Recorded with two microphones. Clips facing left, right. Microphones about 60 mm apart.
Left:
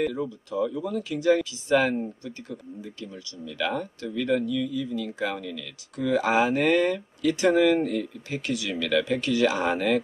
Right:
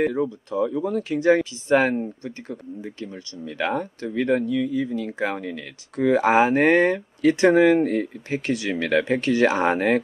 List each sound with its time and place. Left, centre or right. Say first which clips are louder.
0.0 s speech: right 5 dB; right